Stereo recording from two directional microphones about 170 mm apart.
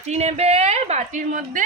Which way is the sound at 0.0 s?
40° right (ahead or behind).